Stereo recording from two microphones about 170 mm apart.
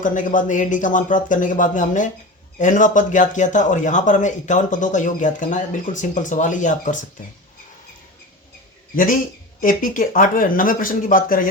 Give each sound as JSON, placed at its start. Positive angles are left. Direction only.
{"t": 0.0, "sound": "a man's voice", "side_deg": 50}
{"t": 9.6, "sound": "a man's voice", "side_deg": 55}